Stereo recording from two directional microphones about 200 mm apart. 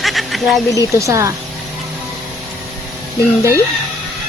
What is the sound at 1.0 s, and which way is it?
Speech, 15° right (ahead or behind).